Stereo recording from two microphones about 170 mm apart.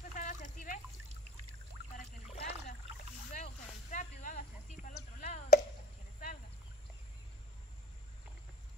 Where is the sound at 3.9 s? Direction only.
50° left (ahead or behind).